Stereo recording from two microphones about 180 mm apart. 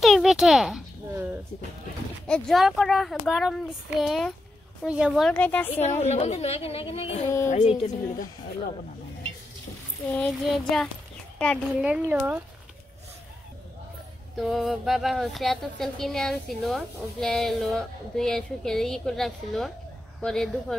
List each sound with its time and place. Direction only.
0.0 s a sound: centre (ahead or behind)
2.2 s a woman's voice: 5° left (ahead or behind)
5.7 s a woman's voice: 40° left (ahead or behind)
10.1 s a woman's voice: 5° left (ahead or behind)
11.7 s speech: 5° right (ahead or behind)
14.3 s a woman's voice: centre (ahead or behind)